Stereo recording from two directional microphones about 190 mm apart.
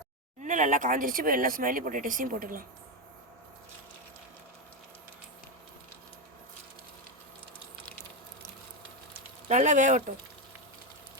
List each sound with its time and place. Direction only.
0.4 s speech: 40° right (ahead or behind)
9.5 s speech: 40° right (ahead or behind)